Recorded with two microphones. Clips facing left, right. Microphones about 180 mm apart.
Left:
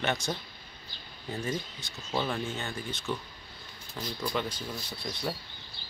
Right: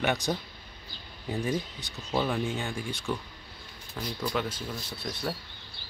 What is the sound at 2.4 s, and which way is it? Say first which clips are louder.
Speech: right 3 dB; 15° right (ahead or behind).